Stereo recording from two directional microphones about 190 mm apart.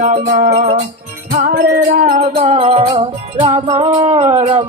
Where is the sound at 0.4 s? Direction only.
50° right (ahead or behind).